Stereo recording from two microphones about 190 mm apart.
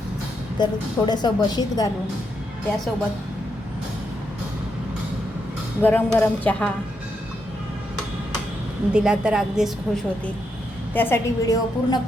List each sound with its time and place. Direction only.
0.6 s a woman's voice: 20° left (ahead or behind)
5.8 s a woman's voice: 10° left (ahead or behind)
8.9 s a woman's voice: 5° right (ahead or behind)
10.9 s a woman's voice: 10° left (ahead or behind)